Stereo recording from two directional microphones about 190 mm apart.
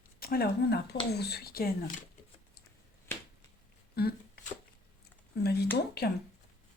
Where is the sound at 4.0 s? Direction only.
55° left (ahead or behind).